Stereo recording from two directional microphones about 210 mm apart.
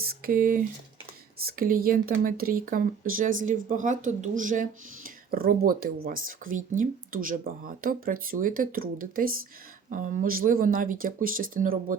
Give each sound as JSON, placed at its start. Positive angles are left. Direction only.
{"t": 0.0, "sound": "speech", "side_deg": -45}